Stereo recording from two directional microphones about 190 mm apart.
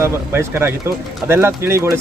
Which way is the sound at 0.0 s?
15° right (ahead or behind).